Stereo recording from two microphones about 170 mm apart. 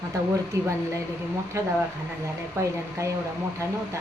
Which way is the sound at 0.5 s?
20° right (ahead or behind).